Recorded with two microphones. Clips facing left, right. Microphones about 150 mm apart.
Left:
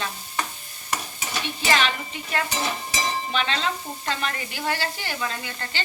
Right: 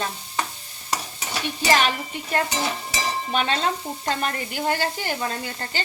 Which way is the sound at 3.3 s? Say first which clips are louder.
Right 5 dB; 40° right (ahead or behind).